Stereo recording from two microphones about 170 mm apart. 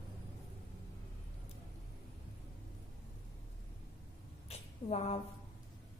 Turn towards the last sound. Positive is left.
turn(degrees=40)  # may be behind; listen again after turning